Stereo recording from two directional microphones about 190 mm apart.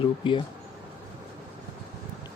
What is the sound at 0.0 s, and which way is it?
Speech, 25° left (ahead or behind).